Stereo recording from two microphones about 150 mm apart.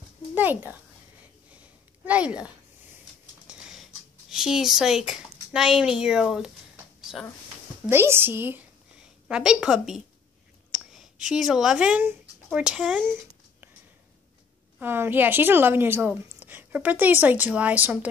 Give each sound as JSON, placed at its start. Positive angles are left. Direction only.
{"t": 0.3, "sound": "speech", "side_deg": -10}
{"t": 2.0, "sound": "a woman's voice", "side_deg": -10}
{"t": 3.4, "sound": "a sound", "side_deg": -5}
{"t": 7.1, "sound": "a woman's voice", "side_deg": -5}
{"t": 7.8, "sound": "a woman's voice", "side_deg": -15}
{"t": 14.8, "sound": "a woman's voice", "side_deg": -15}